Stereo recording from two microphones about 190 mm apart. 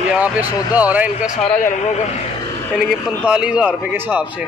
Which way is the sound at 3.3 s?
5° right (ahead or behind).